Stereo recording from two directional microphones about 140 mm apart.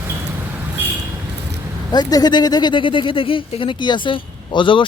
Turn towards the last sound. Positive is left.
turn(degrees=35)  # may be behind; listen again after turning